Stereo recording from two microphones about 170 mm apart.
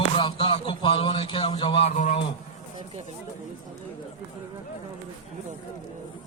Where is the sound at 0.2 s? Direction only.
30° left (ahead or behind).